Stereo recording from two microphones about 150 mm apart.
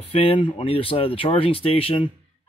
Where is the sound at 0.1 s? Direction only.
40° left (ahead or behind).